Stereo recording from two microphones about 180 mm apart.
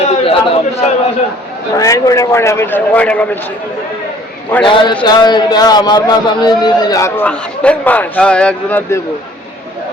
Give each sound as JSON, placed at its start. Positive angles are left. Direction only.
{"t": 0.0, "sound": "a sound", "side_deg": 35}
{"t": 1.7, "sound": "a man's voice", "side_deg": 20}
{"t": 4.6, "sound": "a man's voice", "side_deg": 25}
{"t": 7.3, "sound": "a man's voice", "side_deg": 5}